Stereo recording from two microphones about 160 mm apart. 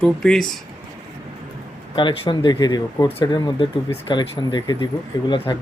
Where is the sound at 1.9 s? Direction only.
30° left (ahead or behind).